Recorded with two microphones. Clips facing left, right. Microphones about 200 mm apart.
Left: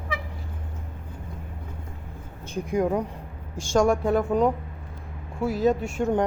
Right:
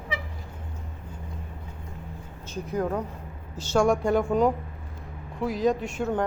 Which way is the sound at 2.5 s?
15° left (ahead or behind).